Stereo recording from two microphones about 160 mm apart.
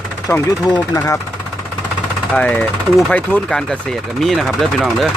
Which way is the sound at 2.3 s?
5° left (ahead or behind).